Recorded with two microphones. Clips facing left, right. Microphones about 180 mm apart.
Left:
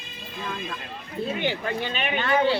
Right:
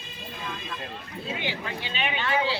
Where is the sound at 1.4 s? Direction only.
50° left (ahead or behind).